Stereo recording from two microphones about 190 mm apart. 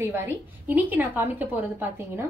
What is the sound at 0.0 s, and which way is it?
A woman's voice, 10° right (ahead or behind).